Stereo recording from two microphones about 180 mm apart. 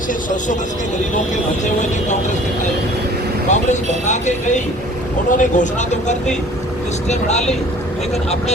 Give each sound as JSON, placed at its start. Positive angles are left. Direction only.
{"t": 3.5, "sound": "speech", "side_deg": 40}